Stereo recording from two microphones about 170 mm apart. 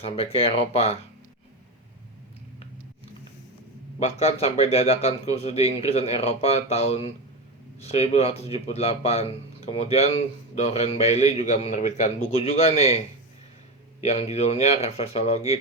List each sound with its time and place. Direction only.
0.0 s speech: 35° left (ahead or behind)
4.0 s speech: 35° left (ahead or behind)
14.0 s speech: 40° left (ahead or behind)